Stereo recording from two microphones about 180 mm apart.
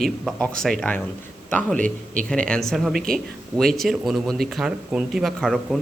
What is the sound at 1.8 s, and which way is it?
Speech, 45° right (ahead or behind).